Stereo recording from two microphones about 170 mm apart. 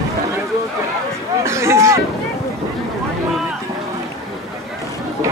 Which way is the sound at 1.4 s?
15° right (ahead or behind).